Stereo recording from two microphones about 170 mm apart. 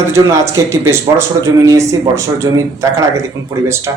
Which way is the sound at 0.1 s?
15° right (ahead or behind).